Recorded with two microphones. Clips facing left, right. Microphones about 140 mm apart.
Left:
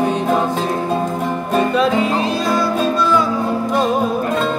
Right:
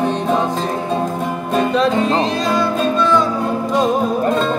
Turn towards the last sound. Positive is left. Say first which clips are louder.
# right 1 dB
turn(degrees=5)  # may be behind; listen again after turning